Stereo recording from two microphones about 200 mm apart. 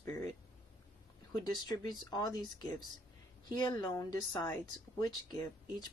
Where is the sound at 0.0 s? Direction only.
15° left (ahead or behind).